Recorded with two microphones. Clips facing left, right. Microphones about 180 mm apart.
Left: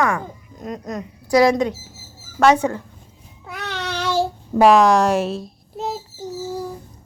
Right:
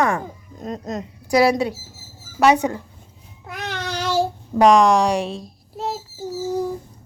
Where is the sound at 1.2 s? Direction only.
10° right (ahead or behind).